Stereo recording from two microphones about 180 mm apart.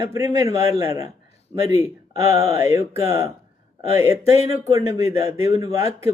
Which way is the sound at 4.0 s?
15° right (ahead or behind).